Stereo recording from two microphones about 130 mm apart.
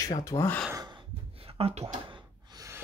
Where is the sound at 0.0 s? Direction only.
25° left (ahead or behind).